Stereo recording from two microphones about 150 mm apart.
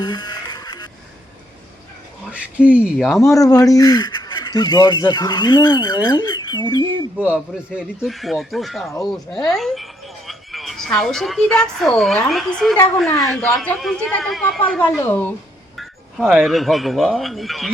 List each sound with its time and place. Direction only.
0.0 s music: 30° left (ahead or behind)
2.3 s speech: 10° right (ahead or behind)
3.3 s speech: 25° left (ahead or behind)
7.2 s speech: 10° right (ahead or behind); by 15.3 s 10° left (ahead or behind)
15.7 s a sound: centre (ahead or behind)
16.2 s speech: 5° right (ahead or behind)